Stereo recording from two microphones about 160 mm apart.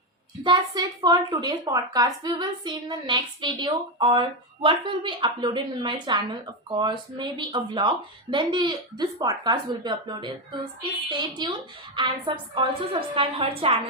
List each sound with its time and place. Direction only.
0.4 s a woman's voice: 25° right (ahead or behind)